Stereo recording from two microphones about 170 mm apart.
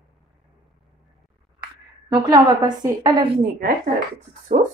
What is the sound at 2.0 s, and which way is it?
A woman's voice, 20° right (ahead or behind).